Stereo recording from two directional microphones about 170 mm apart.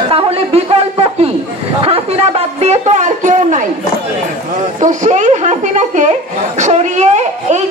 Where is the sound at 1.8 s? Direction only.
35° right (ahead or behind).